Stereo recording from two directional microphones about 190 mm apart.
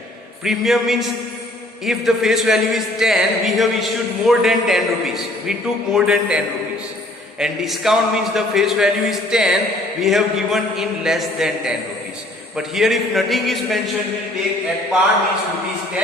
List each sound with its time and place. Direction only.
0.4 s a man's voice: centre (ahead or behind)